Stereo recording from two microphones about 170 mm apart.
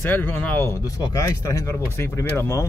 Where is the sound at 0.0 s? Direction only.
10° left (ahead or behind).